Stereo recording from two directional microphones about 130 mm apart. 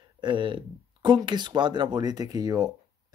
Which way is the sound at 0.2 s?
40° right (ahead or behind).